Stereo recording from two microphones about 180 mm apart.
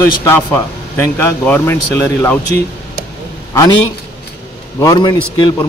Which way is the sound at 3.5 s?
20° left (ahead or behind).